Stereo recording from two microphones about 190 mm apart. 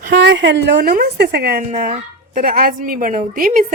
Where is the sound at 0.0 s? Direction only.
55° right (ahead or behind).